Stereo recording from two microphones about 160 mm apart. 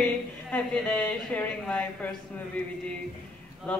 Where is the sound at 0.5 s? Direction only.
10° left (ahead or behind).